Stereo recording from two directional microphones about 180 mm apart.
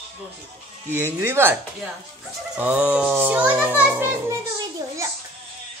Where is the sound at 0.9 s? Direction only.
15° right (ahead or behind).